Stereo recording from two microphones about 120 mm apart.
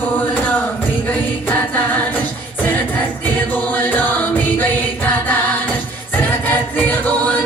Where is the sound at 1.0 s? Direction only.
15° left (ahead or behind).